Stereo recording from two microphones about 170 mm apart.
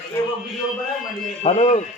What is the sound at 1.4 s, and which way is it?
Speech, 40° left (ahead or behind).